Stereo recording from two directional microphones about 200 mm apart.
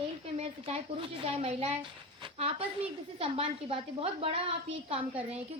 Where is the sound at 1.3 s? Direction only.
30° right (ahead or behind).